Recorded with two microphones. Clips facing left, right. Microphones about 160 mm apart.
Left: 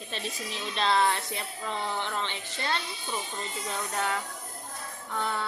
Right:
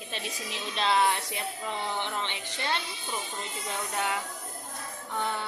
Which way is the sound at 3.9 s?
15° right (ahead or behind).